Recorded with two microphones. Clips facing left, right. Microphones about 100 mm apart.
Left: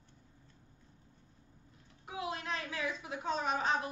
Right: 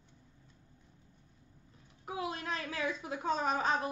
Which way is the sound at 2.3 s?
35° right (ahead or behind).